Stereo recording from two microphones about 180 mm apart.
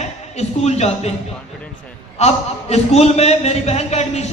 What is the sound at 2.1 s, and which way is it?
A man's voice, 35° left (ahead or behind).